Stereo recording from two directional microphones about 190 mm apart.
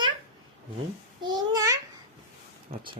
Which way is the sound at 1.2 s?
20° right (ahead or behind).